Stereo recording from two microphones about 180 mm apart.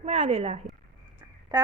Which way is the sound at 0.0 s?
35° right (ahead or behind).